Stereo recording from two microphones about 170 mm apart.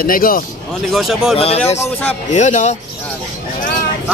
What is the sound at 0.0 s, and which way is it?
Speech, 55° left (ahead or behind).